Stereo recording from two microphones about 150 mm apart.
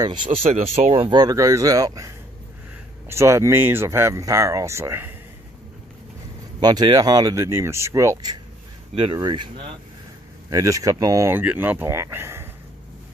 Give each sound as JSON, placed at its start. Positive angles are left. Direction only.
{"t": 0.0, "sound": "speech", "side_deg": -30}
{"t": 0.5, "sound": "speech", "side_deg": -45}
{"t": 0.9, "sound": "speech", "side_deg": -30}
{"t": 6.6, "sound": "speech", "side_deg": -30}